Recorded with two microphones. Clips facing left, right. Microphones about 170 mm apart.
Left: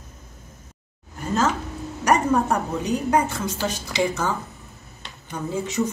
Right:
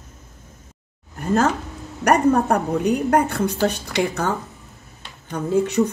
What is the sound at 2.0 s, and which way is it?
Speech, 60° right (ahead or behind).